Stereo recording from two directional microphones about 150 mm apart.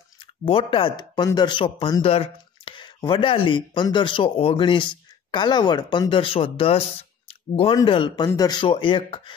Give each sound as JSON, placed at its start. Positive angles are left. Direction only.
{"t": 0.2, "sound": "speech", "side_deg": 35}
{"t": 7.2, "sound": "a sound", "side_deg": 40}
{"t": 7.7, "sound": "a man's voice", "side_deg": 30}